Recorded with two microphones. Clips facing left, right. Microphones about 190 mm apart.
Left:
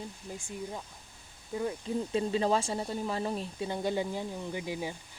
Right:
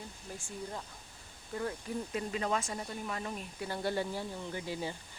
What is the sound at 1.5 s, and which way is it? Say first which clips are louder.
Speech: left 4 dB; 20° left (ahead or behind).